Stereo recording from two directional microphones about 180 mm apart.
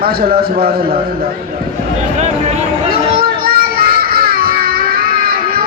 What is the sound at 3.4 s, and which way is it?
Children playing, 55° right (ahead or behind).